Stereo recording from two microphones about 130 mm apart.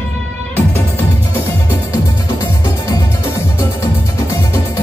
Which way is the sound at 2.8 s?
25° left (ahead or behind).